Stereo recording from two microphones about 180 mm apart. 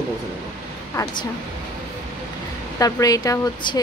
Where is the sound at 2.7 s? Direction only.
20° left (ahead or behind).